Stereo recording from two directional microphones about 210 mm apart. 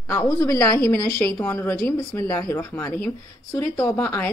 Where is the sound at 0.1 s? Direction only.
15° left (ahead or behind).